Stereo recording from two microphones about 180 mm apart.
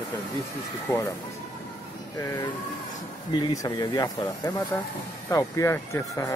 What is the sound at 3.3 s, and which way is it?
Speech, 25° left (ahead or behind).